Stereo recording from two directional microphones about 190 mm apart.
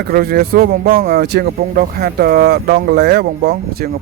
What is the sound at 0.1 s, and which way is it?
Speech, 50° right (ahead or behind).